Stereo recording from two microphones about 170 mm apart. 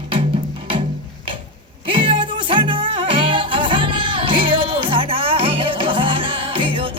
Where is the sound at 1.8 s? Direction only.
30° right (ahead or behind).